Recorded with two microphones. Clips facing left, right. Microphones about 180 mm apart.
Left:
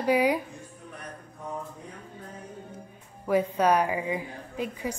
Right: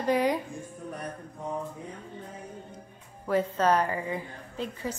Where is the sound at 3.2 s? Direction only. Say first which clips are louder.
Left 2 dB; 10° left (ahead or behind).